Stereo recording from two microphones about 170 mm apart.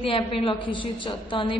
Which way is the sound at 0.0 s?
30° left (ahead or behind).